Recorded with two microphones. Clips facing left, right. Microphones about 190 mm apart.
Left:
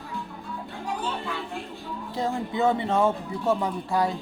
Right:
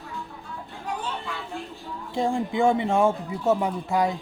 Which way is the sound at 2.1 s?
15° right (ahead or behind).